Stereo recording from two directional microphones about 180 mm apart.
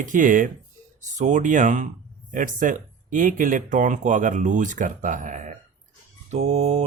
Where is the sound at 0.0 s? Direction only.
45° right (ahead or behind).